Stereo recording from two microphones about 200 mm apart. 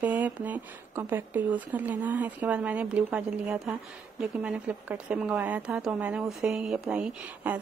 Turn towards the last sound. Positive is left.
turn(degrees=-5)  # may be behind; listen again after turning